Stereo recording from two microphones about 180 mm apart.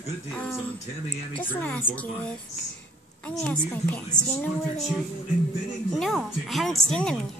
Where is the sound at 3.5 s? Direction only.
10° left (ahead or behind).